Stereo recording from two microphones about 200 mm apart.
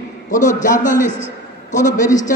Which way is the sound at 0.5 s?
40° left (ahead or behind).